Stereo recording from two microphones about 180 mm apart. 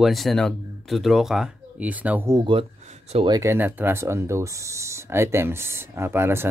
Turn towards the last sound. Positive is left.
turn(degrees=-15)  # may be behind; listen again after turning